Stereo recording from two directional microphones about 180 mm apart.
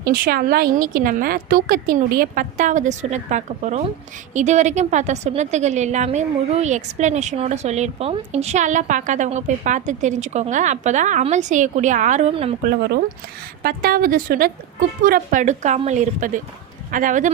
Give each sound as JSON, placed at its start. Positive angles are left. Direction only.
{"t": 0.1, "sound": "a woman's voice", "side_deg": -55}
{"t": 12.6, "sound": "a woman's voice", "side_deg": -60}